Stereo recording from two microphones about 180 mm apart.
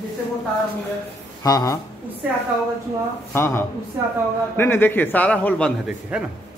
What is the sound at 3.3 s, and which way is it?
A man's voice, 15° left (ahead or behind).